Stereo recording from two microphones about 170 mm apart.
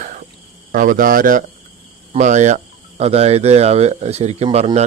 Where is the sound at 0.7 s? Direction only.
55° right (ahead or behind).